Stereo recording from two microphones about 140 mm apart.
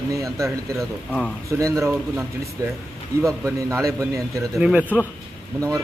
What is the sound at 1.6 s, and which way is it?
Speech, 20° right (ahead or behind).